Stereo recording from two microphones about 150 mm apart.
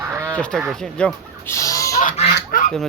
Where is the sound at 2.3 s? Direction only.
70° left (ahead or behind).